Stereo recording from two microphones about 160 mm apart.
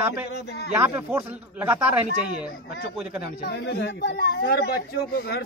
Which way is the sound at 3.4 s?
90° left.